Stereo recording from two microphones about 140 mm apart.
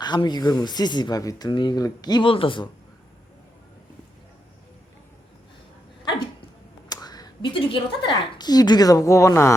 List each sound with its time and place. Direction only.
0.0 s speech: 30° left (ahead or behind)
6.8 s speech: 30° left (ahead or behind)